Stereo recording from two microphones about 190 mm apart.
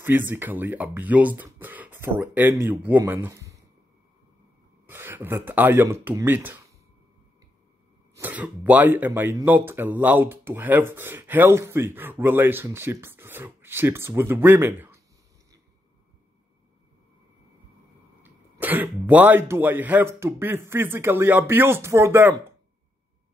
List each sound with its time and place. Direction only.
0.0 s speech: 10° right (ahead or behind)
4.8 s speech: 10° right (ahead or behind)
8.2 s speech: 10° right (ahead or behind)
18.2 s speech: 10° right (ahead or behind)